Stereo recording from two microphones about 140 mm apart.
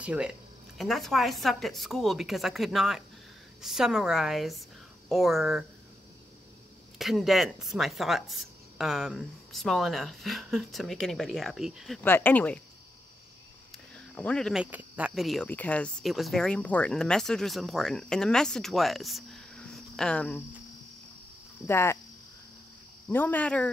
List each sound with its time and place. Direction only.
0.0 s speech: 10° right (ahead or behind)
7.0 s speech: centre (ahead or behind)
12.0 s speech: 15° left (ahead or behind)
13.9 s speech: 10° left (ahead or behind)
14.6 s speech: 10° right (ahead or behind)
15.4 s speech: 10° left (ahead or behind)
21.6 s speech: 15° left (ahead or behind)
23.0 s speech: 10° left (ahead or behind)